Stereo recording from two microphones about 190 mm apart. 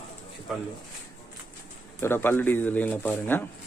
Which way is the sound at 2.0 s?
10° left (ahead or behind).